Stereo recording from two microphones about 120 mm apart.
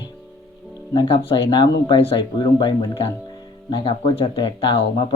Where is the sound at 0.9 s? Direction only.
45° left (ahead or behind).